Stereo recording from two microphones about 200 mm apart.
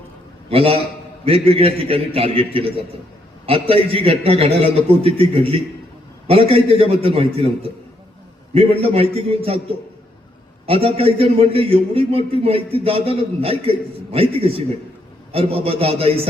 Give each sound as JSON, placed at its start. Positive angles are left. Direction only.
{"t": 0.5, "sound": "a man's voice", "side_deg": -30}
{"t": 8.8, "sound": "a man's voice", "side_deg": -30}
{"t": 10.7, "sound": "a man's voice", "side_deg": -30}